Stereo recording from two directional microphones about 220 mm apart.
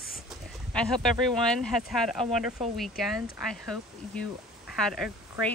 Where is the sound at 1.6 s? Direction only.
Centre (ahead or behind).